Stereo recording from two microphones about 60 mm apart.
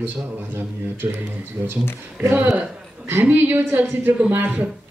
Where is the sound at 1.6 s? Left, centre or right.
Right.